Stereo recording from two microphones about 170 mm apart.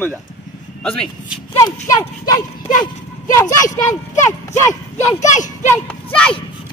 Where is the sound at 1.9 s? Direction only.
20° left (ahead or behind).